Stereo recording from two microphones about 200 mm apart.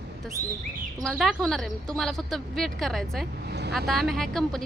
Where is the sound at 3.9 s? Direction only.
Centre (ahead or behind).